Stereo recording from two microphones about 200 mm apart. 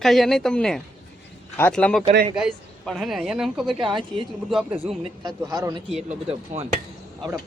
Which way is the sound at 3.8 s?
25° right (ahead or behind).